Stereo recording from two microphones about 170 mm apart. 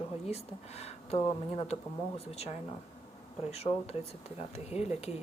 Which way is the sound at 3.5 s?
40° left (ahead or behind).